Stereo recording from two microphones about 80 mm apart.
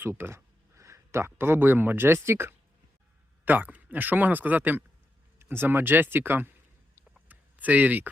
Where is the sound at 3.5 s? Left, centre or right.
Right.